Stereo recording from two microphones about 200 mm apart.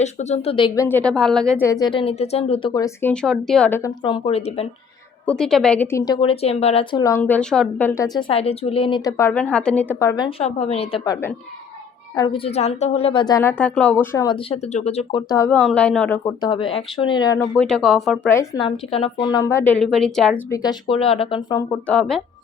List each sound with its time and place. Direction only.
0.0 s speech: 35° left (ahead or behind)
0.9 s a woman's voice: 5° left (ahead or behind)
1.6 s speech: 20° left (ahead or behind)
5.2 s a woman's voice: 5° left (ahead or behind); by 7.0 s 30° left (ahead or behind)
7.0 s a woman's voice: 10° left (ahead or behind)
10.2 s a woman's voice: 30° left (ahead or behind)
11.0 s speech: 20° left (ahead or behind)
15.3 s a woman's voice: 15° left (ahead or behind)
18.3 s a woman's voice: 20° left (ahead or behind); by 20.3 s centre (ahead or behind)
20.5 s speech: 20° left (ahead or behind)
21.8 s a woman's voice: 5° left (ahead or behind)